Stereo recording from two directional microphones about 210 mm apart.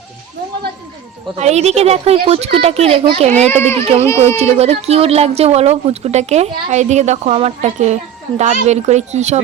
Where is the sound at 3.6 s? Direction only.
10° left (ahead or behind).